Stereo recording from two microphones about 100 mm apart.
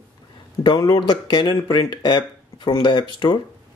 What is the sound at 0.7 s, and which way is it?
Speech, 40° left (ahead or behind).